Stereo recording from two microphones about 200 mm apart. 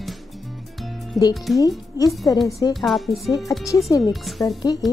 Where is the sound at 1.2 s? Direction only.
Centre (ahead or behind).